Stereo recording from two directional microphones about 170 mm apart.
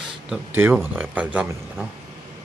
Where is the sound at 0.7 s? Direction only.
10° right (ahead or behind).